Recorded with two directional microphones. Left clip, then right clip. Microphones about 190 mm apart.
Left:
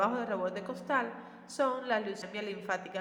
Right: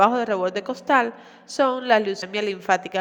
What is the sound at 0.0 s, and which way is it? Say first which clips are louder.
A woman's voice: right 12 dB; 45° right (ahead or behind).